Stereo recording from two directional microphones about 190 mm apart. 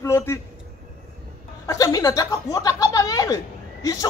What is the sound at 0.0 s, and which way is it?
Speech, 15° left (ahead or behind).